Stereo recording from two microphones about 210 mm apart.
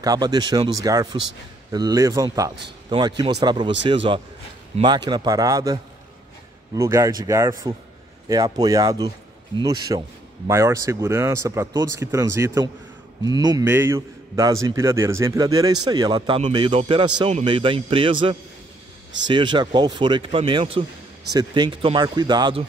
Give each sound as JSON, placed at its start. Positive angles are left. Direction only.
{"t": 0.0, "sound": "a man's voice", "side_deg": -20}